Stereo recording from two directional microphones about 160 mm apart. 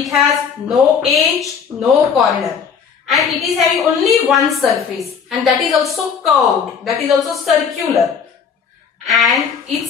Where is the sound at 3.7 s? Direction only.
Centre (ahead or behind).